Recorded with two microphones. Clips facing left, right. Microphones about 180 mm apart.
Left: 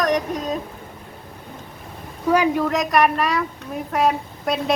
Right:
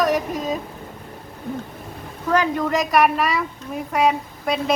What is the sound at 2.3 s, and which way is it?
Speech, 10° left (ahead or behind).